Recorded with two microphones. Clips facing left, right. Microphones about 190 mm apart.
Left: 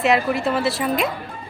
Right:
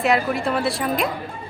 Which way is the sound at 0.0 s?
Centre (ahead or behind).